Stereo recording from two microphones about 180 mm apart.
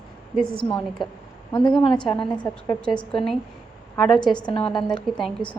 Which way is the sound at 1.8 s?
25° left (ahead or behind).